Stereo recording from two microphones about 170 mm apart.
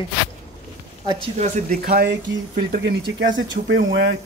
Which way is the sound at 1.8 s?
65° right (ahead or behind).